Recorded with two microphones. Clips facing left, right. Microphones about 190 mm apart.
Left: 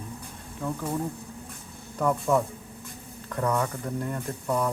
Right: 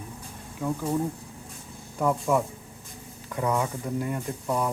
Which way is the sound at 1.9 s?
10° right (ahead or behind).